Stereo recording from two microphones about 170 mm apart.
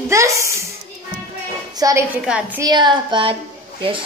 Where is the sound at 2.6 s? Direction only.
25° right (ahead or behind).